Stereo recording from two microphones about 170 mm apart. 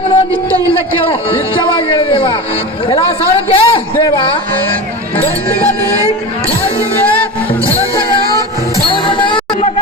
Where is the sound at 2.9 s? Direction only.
30° left (ahead or behind).